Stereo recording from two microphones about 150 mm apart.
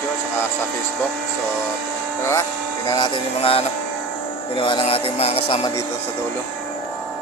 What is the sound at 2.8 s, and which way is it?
Music, 30° left (ahead or behind).